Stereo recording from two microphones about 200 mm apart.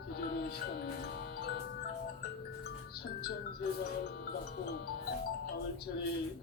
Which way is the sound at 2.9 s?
50° left (ahead or behind).